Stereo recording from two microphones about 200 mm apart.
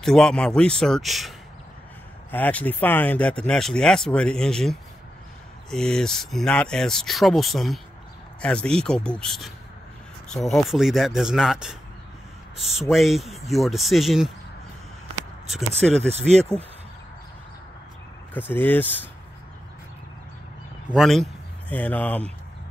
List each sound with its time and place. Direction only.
0.0 s speech: centre (ahead or behind)
2.3 s speech: 10° left (ahead or behind)
12.9 s speech: centre (ahead or behind)
15.8 s speech: 5° left (ahead or behind)
16.1 s speech: 30° right (ahead or behind)
18.5 s speech: 10° left (ahead or behind)
20.9 s speech: centre (ahead or behind)